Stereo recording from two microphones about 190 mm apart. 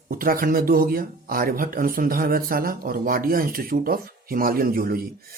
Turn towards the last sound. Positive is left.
turn(degrees=-50)  # may be behind; listen again after turning